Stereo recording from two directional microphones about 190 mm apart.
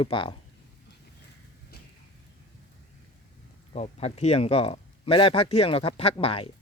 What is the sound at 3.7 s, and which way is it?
A man's voice, 35° left (ahead or behind).